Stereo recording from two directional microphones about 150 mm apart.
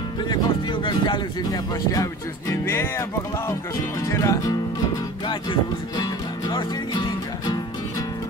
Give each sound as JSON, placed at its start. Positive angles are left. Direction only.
{"t": 0.3, "sound": "speech", "side_deg": 30}
{"t": 2.5, "sound": "music", "side_deg": 15}
{"t": 4.1, "sound": "speech", "side_deg": 20}
{"t": 5.3, "sound": "speech", "side_deg": 30}
{"t": 6.5, "sound": "music", "side_deg": 30}